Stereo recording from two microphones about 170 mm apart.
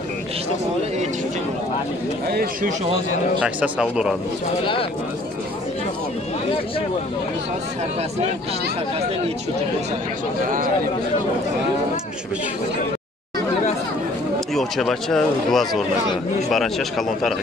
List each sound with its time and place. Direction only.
2.2 s speech: 65° right (ahead or behind)
3.3 s speech: 5° right (ahead or behind)
14.5 s speech: centre (ahead or behind)